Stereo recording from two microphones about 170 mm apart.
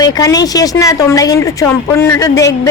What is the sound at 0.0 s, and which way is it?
A woman's voice, 20° left (ahead or behind).